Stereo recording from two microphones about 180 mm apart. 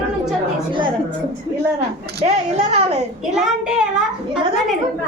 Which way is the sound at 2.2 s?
35° right (ahead or behind).